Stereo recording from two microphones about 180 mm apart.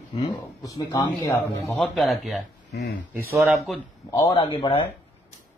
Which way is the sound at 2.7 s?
75° left (ahead or behind).